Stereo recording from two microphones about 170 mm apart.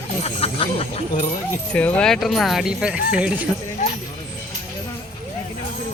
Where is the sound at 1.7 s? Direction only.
10° left (ahead or behind).